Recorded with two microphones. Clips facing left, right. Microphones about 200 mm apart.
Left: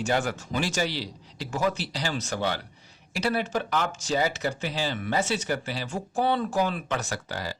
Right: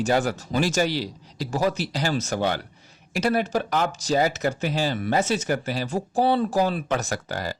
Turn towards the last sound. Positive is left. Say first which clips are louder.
# right 4 dB
turn(degrees=-45)  # may be behind; listen again after turning